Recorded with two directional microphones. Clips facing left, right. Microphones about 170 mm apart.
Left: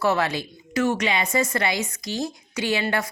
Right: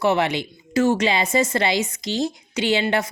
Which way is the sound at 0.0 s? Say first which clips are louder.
Right 3 dB; 20° right (ahead or behind).